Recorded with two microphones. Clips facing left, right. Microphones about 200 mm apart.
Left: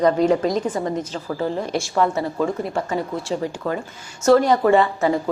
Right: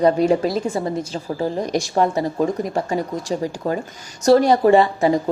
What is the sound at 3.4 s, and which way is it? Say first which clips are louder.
Speech: right 2 dB; 35° right (ahead or behind).